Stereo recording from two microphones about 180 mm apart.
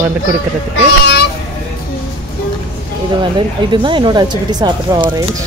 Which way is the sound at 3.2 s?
25° right (ahead or behind).